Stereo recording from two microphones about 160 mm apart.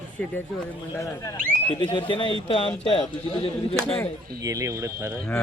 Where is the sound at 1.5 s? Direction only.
35° left (ahead or behind).